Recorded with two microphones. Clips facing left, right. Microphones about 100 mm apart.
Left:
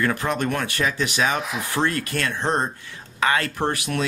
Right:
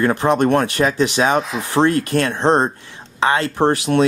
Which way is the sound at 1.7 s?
30° right (ahead or behind).